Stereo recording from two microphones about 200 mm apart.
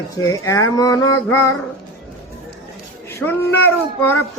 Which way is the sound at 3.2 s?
10° left (ahead or behind).